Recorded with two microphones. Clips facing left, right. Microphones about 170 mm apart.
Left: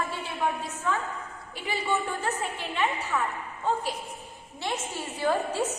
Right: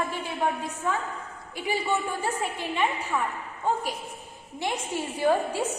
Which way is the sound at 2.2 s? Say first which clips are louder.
Right 2 dB; 10° right (ahead or behind).